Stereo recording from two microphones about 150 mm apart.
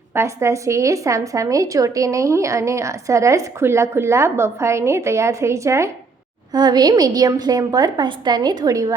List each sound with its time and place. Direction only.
0.1 s a woman's voice: 20° right (ahead or behind)